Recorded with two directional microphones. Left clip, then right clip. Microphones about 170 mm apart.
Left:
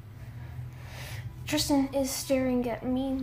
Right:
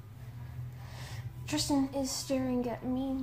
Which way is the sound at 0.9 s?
10° left (ahead or behind).